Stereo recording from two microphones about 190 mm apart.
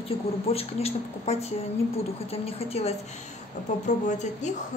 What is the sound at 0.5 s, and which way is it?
A woman's voice, 30° left (ahead or behind).